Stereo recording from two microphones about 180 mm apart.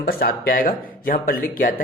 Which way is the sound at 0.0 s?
55° left (ahead or behind).